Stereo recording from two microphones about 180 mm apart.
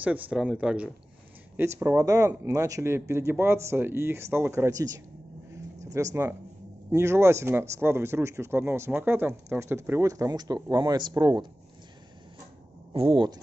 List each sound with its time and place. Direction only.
0.0 s speech: 10° right (ahead or behind); by 11.4 s 25° right (ahead or behind)
12.9 s speech: 30° right (ahead or behind)